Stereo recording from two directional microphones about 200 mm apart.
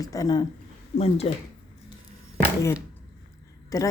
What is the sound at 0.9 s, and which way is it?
Speech, 30° left (ahead or behind).